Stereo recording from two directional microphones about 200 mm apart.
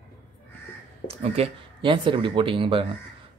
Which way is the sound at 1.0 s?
30° right (ahead or behind).